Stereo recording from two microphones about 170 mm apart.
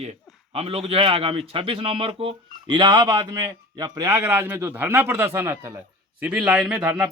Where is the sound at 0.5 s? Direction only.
35° right (ahead or behind).